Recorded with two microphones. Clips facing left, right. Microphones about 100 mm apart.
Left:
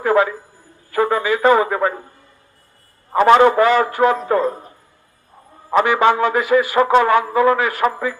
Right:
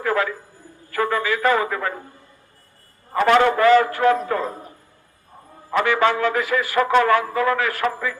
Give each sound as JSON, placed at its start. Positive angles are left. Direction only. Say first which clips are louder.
{"t": 0.0, "sound": "a man's voice", "louder": "left 6 dB", "side_deg": 20}
{"t": 0.9, "sound": "a sound", "louder": "left 4 dB", "side_deg": 20}
{"t": 3.1, "sound": "a man's voice", "louder": "left 5 dB", "side_deg": 25}
{"t": 5.7, "sound": "a man's voice", "louder": "left 4 dB", "side_deg": 20}